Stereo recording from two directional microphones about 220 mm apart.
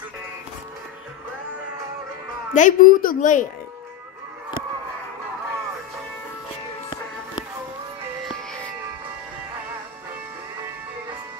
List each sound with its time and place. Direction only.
2.5 s a woman's voice: 35° left (ahead or behind)